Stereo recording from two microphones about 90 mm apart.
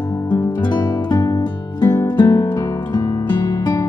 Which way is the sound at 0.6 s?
60° left (ahead or behind).